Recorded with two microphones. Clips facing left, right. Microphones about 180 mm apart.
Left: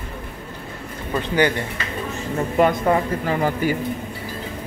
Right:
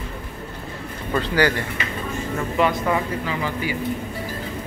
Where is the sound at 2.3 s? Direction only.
45° left (ahead or behind).